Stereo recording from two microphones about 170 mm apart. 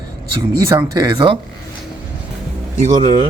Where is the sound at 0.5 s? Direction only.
20° right (ahead or behind).